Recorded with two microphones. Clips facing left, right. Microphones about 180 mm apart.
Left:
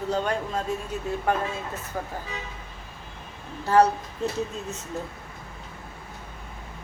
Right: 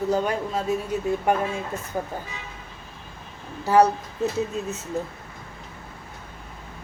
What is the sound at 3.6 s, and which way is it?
Speech, 10° right (ahead or behind).